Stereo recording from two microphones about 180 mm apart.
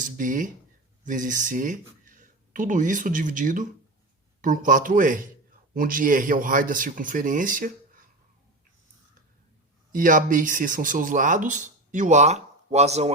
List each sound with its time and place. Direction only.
0.0 s speech: 45° right (ahead or behind)
9.9 s speech: 45° right (ahead or behind)